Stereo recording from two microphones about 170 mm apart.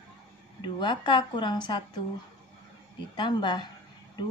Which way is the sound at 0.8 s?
25° left (ahead or behind).